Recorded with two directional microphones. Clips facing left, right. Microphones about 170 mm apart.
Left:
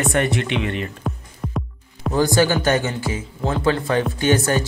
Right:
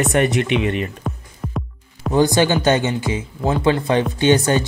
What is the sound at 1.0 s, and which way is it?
Music, centre (ahead or behind).